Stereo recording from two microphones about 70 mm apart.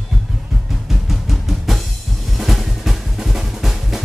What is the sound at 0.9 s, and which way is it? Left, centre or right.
Music, centre.